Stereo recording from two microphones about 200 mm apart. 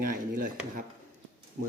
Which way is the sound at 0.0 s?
45° right (ahead or behind).